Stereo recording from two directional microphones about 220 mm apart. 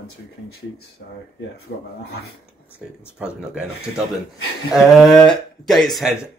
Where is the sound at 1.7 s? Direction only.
50° left (ahead or behind).